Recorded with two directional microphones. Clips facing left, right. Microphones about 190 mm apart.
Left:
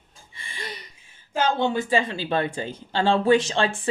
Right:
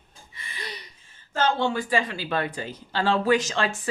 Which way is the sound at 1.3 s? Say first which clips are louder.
Left 1 dB; 15° left (ahead or behind).